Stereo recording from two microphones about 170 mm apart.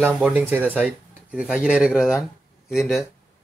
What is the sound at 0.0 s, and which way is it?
Speech, 10° right (ahead or behind).